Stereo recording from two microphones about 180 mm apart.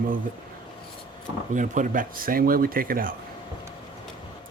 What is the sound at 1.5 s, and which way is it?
Speech, 45° right (ahead or behind).